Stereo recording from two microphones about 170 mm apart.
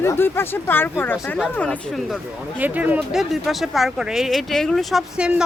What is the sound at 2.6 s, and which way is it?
Speech, 10° right (ahead or behind).